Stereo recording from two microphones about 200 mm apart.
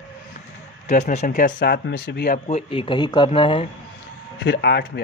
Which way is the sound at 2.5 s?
30° left (ahead or behind).